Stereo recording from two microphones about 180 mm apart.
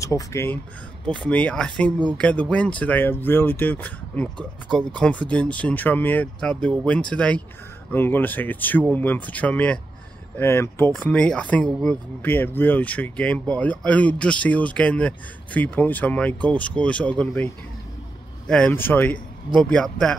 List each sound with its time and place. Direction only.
0.0 s a man's voice: 20° left (ahead or behind)
18.5 s a man's voice: 10° left (ahead or behind)